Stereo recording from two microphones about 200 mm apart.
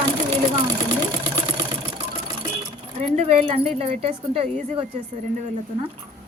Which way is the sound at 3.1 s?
30° right (ahead or behind).